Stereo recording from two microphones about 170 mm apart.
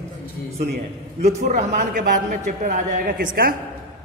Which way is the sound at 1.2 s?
60° right (ahead or behind).